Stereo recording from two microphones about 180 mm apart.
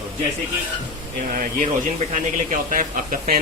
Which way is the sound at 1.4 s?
45° right (ahead or behind).